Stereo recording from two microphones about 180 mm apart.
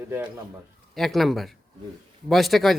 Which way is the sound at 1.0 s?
Centre (ahead or behind).